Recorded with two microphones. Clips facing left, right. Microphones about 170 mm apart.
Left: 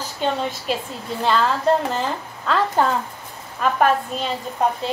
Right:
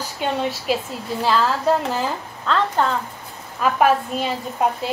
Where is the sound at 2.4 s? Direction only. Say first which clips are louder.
Left 1 dB; 5° left (ahead or behind).